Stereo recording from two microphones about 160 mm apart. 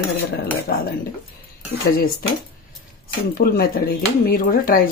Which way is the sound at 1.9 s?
70° left (ahead or behind).